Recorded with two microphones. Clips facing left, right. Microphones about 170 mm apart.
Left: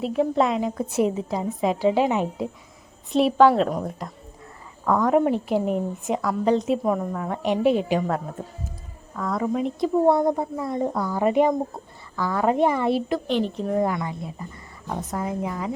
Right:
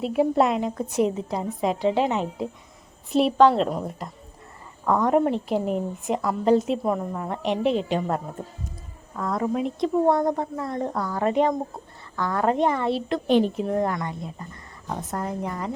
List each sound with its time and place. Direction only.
0.0 s a woman's voice: 5° right (ahead or behind)
9.1 s a woman's voice: centre (ahead or behind)
13.2 s speech: 15° right (ahead or behind)
13.7 s a woman's voice: 5° left (ahead or behind)